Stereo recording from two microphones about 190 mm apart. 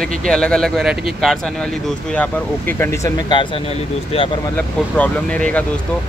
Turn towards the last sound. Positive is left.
turn(degrees=5)  # may be behind; listen again after turning